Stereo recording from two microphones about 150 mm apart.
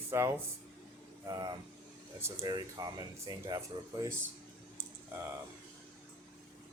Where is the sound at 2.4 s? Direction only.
30° right (ahead or behind).